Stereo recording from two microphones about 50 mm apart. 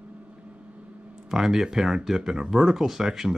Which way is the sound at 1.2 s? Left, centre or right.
Centre.